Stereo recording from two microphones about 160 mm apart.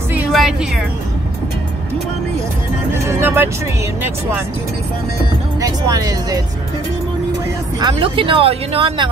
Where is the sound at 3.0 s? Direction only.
15° right (ahead or behind).